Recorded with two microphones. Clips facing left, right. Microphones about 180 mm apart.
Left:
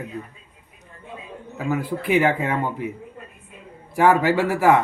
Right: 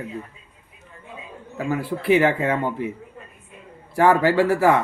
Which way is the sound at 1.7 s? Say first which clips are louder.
Right 2 dB; 15° left (ahead or behind).